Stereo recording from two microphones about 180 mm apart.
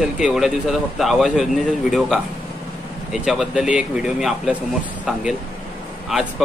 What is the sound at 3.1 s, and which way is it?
Speech, 5° right (ahead or behind).